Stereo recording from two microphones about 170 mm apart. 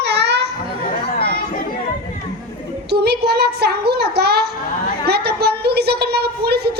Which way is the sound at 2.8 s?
70° right (ahead or behind).